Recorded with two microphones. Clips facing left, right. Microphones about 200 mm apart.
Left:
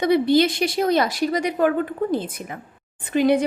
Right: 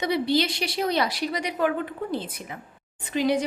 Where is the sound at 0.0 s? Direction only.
50° left (ahead or behind).